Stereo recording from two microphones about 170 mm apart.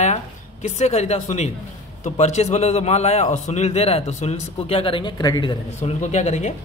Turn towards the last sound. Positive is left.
turn(degrees=40)  # may be behind; listen again after turning